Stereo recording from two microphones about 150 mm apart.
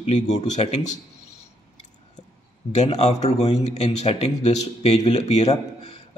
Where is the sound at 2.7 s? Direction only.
50° left (ahead or behind).